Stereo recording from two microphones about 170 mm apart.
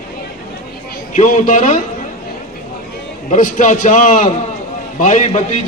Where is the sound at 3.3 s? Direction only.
50° left (ahead or behind).